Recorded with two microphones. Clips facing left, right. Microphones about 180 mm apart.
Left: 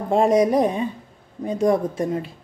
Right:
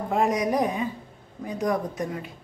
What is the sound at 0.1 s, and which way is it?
Speech, 30° left (ahead or behind).